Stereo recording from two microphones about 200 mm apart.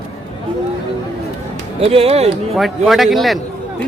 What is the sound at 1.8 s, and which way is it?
Speech, 30° right (ahead or behind).